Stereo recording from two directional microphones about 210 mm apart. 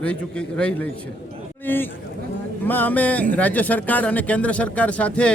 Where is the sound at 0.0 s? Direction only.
5° left (ahead or behind).